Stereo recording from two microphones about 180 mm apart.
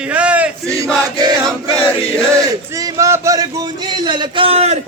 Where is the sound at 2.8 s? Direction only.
20° right (ahead or behind); by 4.7 s 35° right (ahead or behind).